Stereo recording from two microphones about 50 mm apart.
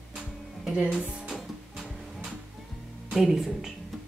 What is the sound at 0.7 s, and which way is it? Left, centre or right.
Speech, centre.